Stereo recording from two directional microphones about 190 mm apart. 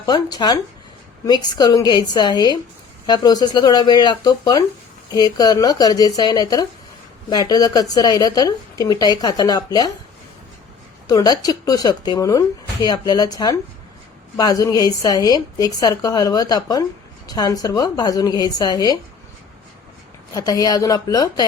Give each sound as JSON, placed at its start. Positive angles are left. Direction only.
{"t": 0.0, "sound": "speech", "side_deg": 20}
{"t": 11.1, "sound": "speech", "side_deg": 20}
{"t": 20.3, "sound": "speech", "side_deg": 20}